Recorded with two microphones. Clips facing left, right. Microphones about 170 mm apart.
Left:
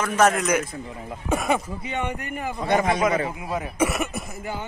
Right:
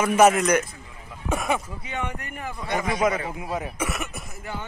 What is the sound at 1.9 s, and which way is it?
Speech, centre (ahead or behind).